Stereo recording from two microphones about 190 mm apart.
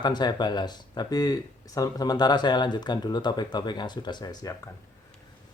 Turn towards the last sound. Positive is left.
turn(degrees=20)  # may be behind; listen again after turning